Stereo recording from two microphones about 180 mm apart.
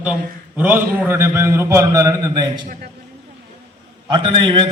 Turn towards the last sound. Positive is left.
turn(degrees=-25)  # may be behind; listen again after turning